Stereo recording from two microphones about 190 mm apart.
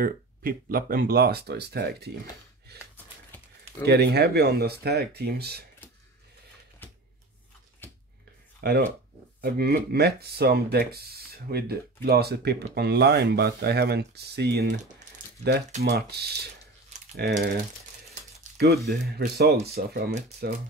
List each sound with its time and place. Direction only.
0.0 s speech: 50° right (ahead or behind)
2.7 s gasp: 55° right (ahead or behind)
3.8 s speech: 60° right (ahead or behind)
8.5 s speech: 55° right (ahead or behind)
15.8 s speech: 55° right (ahead or behind)
18.9 s speech: 55° right (ahead or behind)